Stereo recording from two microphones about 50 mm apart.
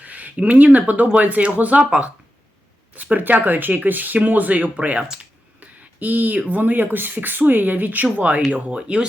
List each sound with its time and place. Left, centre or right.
0.0 s speech: right
5.5 s a sound: right
6.5 s speech: right; by 9.0 s centre